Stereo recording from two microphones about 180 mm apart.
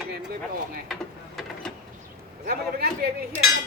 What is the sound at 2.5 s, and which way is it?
Speech, 60° right (ahead or behind).